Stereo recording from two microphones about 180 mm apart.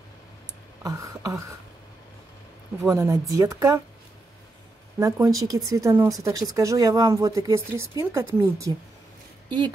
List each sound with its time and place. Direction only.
0.8 s speech: 20° right (ahead or behind)
2.8 s speech: 15° right (ahead or behind)
4.9 s speech: 15° right (ahead or behind)